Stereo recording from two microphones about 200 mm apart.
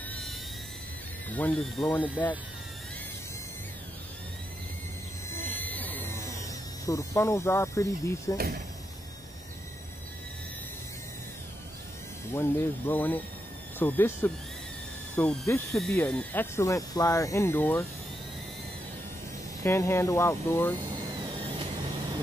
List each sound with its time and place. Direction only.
0.1 s a sound: centre (ahead or behind)
1.3 s speech: 5° left (ahead or behind)
5.3 s music: 10° left (ahead or behind)
6.9 s speech: 15° left (ahead or behind)
12.4 s speech: 10° left (ahead or behind)
19.6 s speech: 15° left (ahead or behind)
21.2 s vehicle: 25° right (ahead or behind)